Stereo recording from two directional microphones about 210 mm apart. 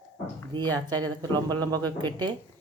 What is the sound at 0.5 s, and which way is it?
Speech, 20° right (ahead or behind).